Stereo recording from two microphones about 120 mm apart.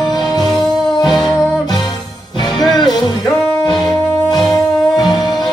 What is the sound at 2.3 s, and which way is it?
Music, 35° left (ahead or behind).